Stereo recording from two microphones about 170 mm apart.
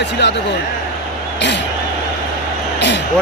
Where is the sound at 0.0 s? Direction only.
90° left.